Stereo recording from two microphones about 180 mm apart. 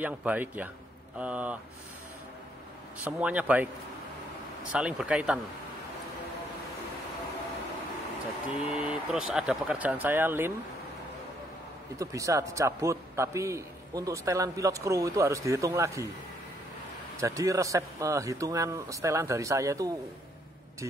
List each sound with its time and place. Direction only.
0.0 s a man's voice: 10° right (ahead or behind)
3.0 s a man's voice: 10° right (ahead or behind)
4.7 s speech: 5° right (ahead or behind)
8.5 s a man's voice: 5° right (ahead or behind)
12.0 s a man's voice: 15° right (ahead or behind)
17.2 s a man's voice: 20° right (ahead or behind)